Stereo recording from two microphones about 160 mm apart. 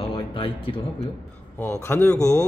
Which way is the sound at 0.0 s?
35° left (ahead or behind).